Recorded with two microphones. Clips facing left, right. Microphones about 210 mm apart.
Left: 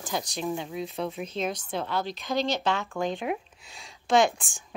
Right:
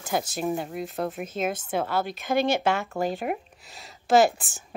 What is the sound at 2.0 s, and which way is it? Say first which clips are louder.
Speech: right 4 dB; 50° right (ahead or behind).